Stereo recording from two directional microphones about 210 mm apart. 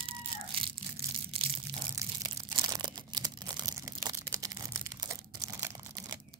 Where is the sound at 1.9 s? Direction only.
20° right (ahead or behind).